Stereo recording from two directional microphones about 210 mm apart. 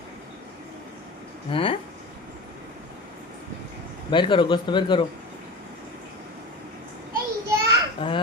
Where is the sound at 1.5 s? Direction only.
25° left (ahead or behind).